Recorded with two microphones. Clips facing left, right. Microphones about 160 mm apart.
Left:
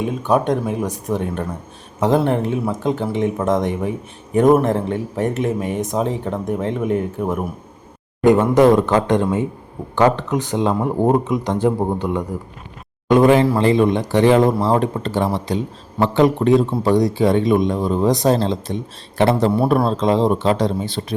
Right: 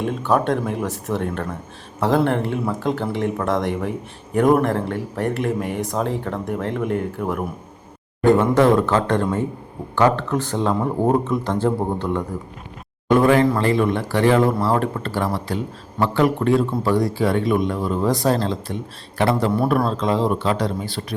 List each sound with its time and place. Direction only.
0.0 s speech: 15° left (ahead or behind)